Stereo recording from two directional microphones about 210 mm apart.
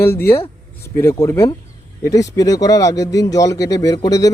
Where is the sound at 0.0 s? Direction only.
10° left (ahead or behind).